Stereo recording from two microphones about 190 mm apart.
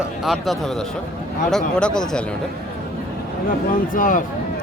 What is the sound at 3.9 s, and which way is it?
Speech, 45° left (ahead or behind).